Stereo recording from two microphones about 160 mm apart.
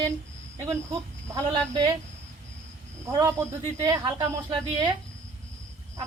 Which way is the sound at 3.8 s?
20° right (ahead or behind).